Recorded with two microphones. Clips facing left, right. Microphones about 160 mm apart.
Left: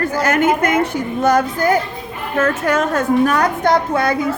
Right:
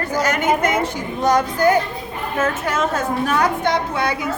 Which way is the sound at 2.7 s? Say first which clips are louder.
Left 5 dB; 55° left (ahead or behind).